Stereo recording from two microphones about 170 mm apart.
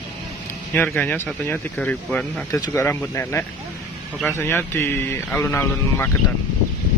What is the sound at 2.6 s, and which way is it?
Speech, 15° left (ahead or behind).